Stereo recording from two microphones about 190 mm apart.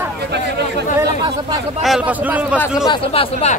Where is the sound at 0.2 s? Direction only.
60° right (ahead or behind).